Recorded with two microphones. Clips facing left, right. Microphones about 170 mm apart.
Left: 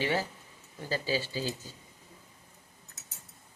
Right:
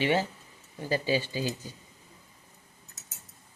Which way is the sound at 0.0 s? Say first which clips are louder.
Right 4 dB; 20° right (ahead or behind).